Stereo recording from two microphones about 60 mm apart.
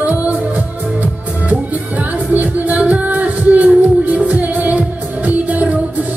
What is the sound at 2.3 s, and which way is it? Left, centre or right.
Music, right.